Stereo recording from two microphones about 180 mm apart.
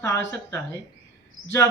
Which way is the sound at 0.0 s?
15° left (ahead or behind).